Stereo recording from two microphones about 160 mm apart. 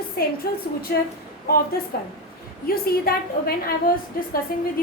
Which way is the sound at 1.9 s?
70° left (ahead or behind).